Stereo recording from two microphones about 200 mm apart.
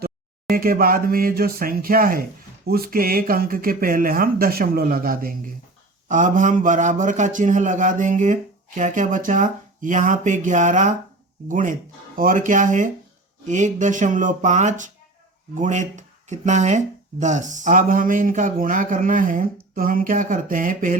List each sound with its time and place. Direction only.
0.5 s speech: 45° right (ahead or behind)